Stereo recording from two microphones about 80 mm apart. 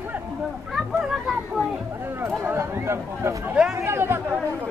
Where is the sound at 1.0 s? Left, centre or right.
Centre.